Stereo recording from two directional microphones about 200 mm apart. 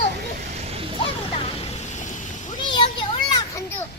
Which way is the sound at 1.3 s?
30° left (ahead or behind).